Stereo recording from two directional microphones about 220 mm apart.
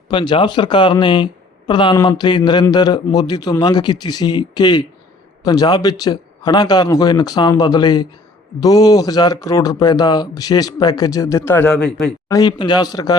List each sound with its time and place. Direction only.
0.1 s speech: 20° left (ahead or behind); by 12.1 s 5° left (ahead or behind)
12.3 s speech: 20° left (ahead or behind)